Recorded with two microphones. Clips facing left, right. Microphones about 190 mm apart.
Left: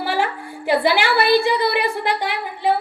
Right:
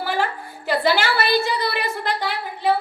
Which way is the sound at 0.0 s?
15° left (ahead or behind).